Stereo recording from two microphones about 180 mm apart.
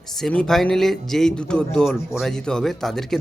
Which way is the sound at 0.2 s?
5° left (ahead or behind).